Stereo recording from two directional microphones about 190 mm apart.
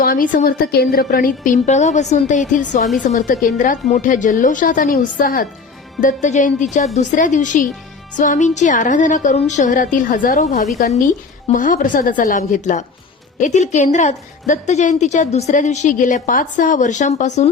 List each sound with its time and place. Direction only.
0.0 s a woman's voice: 50° left (ahead or behind)